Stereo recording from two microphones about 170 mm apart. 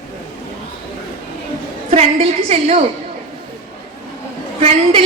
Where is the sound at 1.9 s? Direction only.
40° right (ahead or behind).